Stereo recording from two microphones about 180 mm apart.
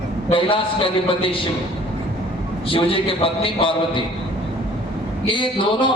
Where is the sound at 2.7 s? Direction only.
30° left (ahead or behind).